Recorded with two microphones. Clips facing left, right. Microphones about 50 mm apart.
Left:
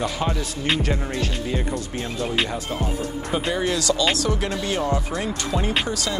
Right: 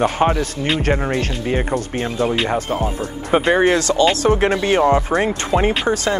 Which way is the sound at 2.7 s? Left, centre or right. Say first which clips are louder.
Right 5 dB; right.